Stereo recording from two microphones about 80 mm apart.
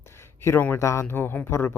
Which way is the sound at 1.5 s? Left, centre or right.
Left.